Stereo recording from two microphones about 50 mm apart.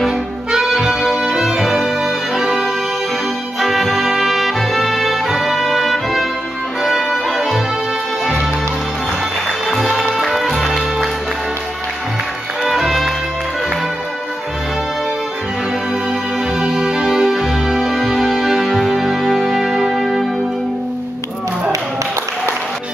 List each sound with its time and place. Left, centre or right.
0.0 s music: centre
9.9 s music: centre
12.6 s music: centre
16.5 s music: centre